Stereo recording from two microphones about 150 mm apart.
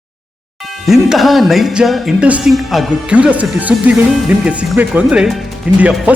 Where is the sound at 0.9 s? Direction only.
Centre (ahead or behind).